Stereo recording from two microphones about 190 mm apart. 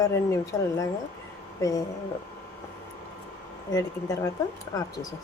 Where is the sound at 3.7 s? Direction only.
20° left (ahead or behind).